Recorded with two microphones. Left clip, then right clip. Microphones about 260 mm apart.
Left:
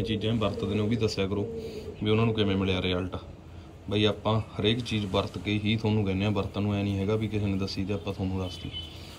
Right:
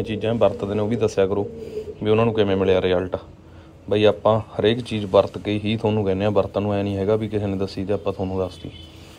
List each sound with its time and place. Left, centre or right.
0.0 s a man's voice: right
4.2 s a man's voice: right